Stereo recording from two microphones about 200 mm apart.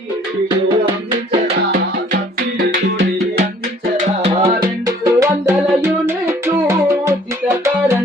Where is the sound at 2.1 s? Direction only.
50° right (ahead or behind).